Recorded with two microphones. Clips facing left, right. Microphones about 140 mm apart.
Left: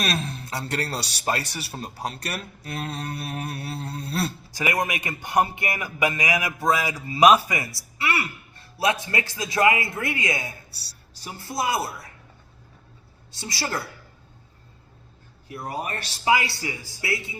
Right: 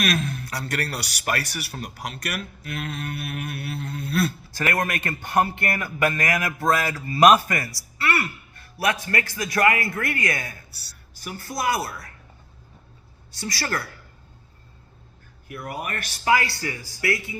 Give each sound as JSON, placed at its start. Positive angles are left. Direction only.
{"t": 0.0, "sound": "speech", "side_deg": 35}
{"t": 4.5, "sound": "a man's voice", "side_deg": 15}
{"t": 7.5, "sound": "a man's voice", "side_deg": 20}
{"t": 8.5, "sound": "a man's voice", "side_deg": 25}
{"t": 13.3, "sound": "a man's voice", "side_deg": 25}
{"t": 15.4, "sound": "a man's voice", "side_deg": 30}